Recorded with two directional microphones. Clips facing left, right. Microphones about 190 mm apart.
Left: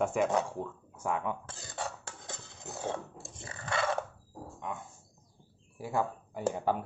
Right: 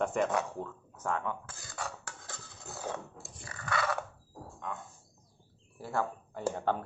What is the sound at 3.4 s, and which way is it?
Chewing, 25° left (ahead or behind).